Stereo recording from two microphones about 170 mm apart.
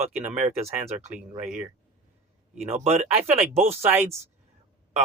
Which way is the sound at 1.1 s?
5° right (ahead or behind).